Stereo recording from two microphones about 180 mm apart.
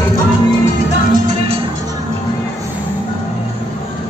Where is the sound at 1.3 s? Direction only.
35° right (ahead or behind).